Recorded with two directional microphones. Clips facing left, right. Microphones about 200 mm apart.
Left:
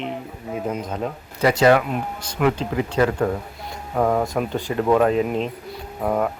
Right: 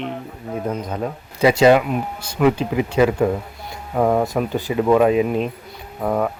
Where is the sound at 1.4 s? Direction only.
10° right (ahead or behind).